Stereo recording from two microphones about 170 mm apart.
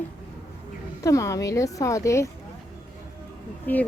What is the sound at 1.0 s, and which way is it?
A woman's voice, 20° left (ahead or behind).